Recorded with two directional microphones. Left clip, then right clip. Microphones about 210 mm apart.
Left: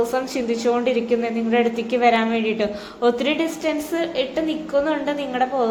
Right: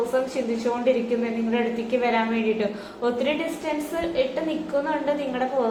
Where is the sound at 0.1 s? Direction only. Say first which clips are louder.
Left 2 dB; 55° left (ahead or behind).